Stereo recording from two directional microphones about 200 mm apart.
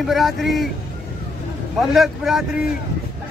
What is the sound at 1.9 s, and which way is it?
Speech, centre (ahead or behind).